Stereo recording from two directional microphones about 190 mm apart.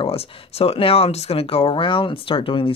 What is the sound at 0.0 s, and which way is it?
Speech, 30° left (ahead or behind).